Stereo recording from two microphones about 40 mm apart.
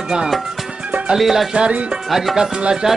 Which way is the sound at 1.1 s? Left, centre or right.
Centre.